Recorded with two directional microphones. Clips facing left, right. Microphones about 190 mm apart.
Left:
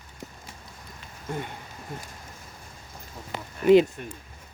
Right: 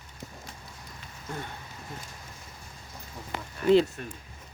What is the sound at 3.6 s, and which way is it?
Speech, 15° left (ahead or behind).